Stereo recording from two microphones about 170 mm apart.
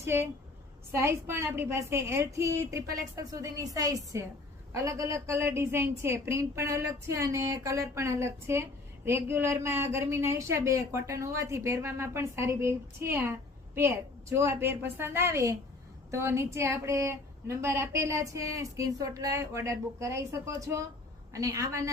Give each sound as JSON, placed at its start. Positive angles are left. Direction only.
{"t": 0.0, "sound": "a woman's voice", "side_deg": -15}